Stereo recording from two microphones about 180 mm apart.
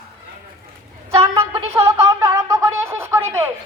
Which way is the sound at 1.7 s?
15° right (ahead or behind).